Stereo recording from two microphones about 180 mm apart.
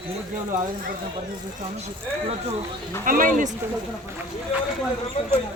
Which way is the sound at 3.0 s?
50° right (ahead or behind).